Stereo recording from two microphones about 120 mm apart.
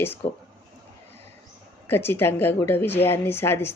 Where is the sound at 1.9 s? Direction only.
20° left (ahead or behind).